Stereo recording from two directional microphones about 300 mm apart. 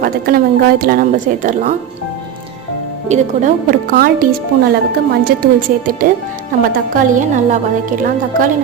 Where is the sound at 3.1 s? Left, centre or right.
Right.